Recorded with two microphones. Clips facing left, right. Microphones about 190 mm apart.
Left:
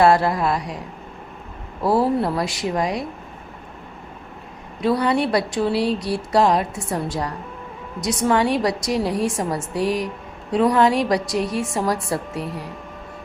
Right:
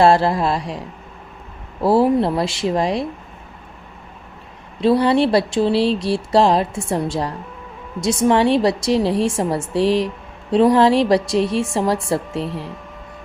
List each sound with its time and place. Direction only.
0.0 s speech: 30° right (ahead or behind)
1.8 s speech: 25° right (ahead or behind)
4.8 s speech: 25° right (ahead or behind)